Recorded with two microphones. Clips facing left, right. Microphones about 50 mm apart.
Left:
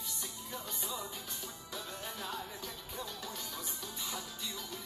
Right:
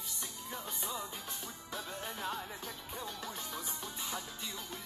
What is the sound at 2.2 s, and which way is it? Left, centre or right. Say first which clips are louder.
Music: right 3 dB; right.